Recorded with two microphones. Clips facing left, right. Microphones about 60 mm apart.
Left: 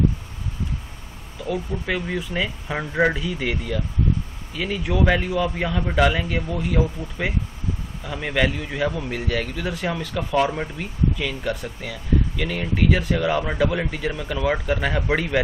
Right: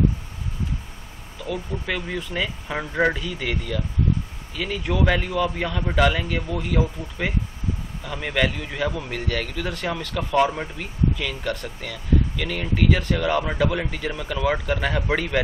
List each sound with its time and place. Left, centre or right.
1.4 s speech: centre